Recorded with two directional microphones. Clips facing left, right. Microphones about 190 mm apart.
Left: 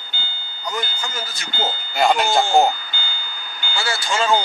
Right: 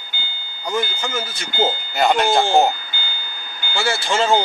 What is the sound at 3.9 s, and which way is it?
Speech, 25° right (ahead or behind).